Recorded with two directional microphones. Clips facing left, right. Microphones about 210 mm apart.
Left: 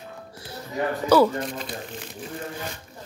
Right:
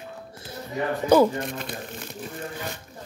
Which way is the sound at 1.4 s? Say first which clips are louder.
Left 1 dB; 55° right (ahead or behind).